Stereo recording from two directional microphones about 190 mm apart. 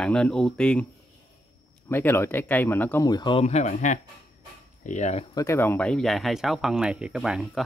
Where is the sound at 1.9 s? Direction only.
10° left (ahead or behind); by 5.2 s 40° left (ahead or behind).